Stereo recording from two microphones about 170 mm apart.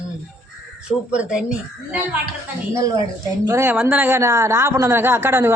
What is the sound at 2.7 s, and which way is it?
Speech, 20° right (ahead or behind).